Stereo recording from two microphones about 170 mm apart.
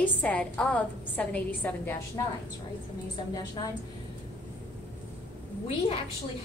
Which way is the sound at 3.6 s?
25° left (ahead or behind).